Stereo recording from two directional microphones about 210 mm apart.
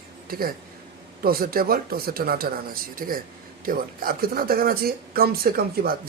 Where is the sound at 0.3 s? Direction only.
45° right (ahead or behind).